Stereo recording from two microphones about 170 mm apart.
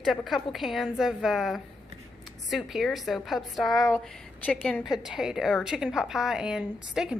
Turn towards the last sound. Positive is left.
turn(degrees=-5)  # may be behind; listen again after turning